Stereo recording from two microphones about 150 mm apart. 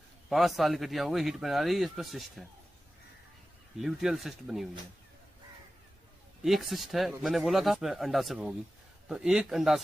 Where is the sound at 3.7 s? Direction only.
Centre (ahead or behind).